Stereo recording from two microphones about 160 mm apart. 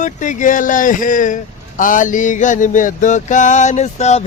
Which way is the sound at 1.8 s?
55° left (ahead or behind).